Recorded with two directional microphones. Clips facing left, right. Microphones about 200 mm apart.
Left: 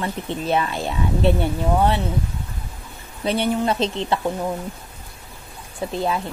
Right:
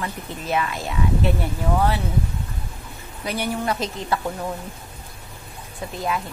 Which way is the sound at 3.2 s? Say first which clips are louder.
Left 5 dB; 25° left (ahead or behind).